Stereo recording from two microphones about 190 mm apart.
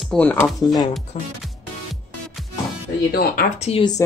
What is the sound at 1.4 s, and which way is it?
Music, centre (ahead or behind).